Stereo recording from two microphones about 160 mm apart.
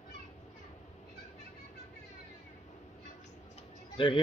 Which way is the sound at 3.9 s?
30° left (ahead or behind).